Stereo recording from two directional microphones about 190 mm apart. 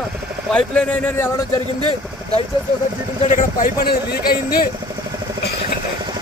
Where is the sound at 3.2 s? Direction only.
45° left (ahead or behind).